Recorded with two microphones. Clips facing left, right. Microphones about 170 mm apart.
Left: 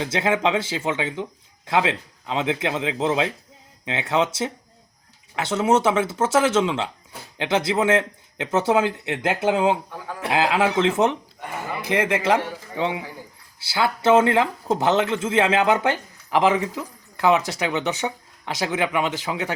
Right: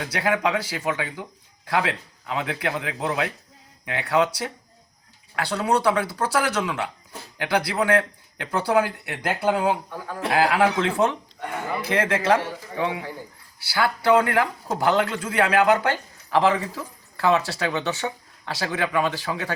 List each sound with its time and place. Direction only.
0.0 s a man's voice: 25° left (ahead or behind)